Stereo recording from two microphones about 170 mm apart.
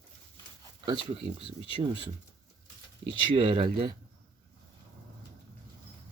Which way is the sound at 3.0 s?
30° right (ahead or behind).